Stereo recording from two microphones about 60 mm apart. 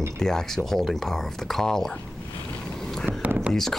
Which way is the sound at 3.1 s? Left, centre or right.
Right.